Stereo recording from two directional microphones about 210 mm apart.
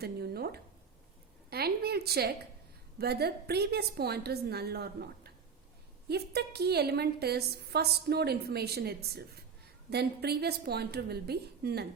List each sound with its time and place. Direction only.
0.0 s a woman's voice: 50° right (ahead or behind)